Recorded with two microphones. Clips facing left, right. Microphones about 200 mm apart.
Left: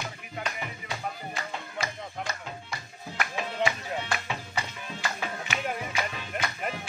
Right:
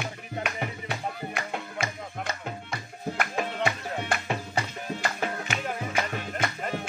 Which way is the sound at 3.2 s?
50° right (ahead or behind).